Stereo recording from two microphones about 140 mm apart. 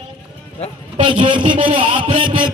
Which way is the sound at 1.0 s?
35° right (ahead or behind).